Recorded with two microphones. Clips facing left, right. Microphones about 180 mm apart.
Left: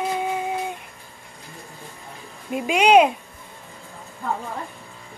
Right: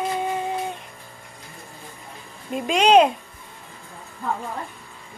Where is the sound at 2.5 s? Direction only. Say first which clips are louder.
Even; 10° left (ahead or behind).